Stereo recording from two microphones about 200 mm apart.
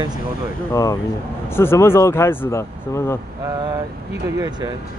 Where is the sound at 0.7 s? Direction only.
15° left (ahead or behind).